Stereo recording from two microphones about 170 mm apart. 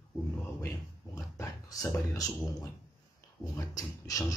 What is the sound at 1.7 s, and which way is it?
Speech, 20° left (ahead or behind).